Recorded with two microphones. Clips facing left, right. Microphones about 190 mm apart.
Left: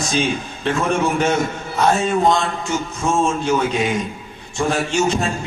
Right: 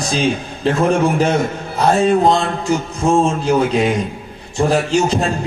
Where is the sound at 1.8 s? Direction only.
35° right (ahead or behind).